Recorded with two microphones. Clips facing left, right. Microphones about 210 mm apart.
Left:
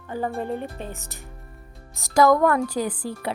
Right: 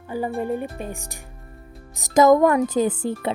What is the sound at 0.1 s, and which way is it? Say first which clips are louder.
A woman's voice: right 2 dB; 10° right (ahead or behind).